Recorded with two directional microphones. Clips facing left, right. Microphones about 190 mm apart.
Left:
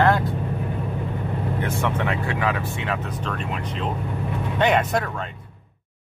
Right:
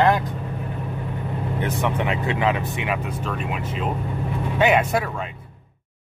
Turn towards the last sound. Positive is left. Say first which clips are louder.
# right 1 dB
turn(degrees=-5)  # may be behind; listen again after turning